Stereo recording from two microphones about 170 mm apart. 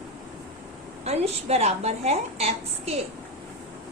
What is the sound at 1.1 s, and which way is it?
A woman's voice, 40° right (ahead or behind).